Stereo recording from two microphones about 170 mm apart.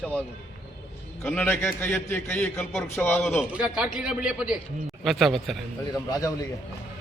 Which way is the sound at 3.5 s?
5° right (ahead or behind).